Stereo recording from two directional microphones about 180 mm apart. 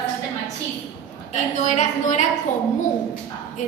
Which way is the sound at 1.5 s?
40° left (ahead or behind).